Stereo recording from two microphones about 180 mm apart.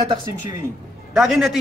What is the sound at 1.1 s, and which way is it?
Speech, 5° right (ahead or behind).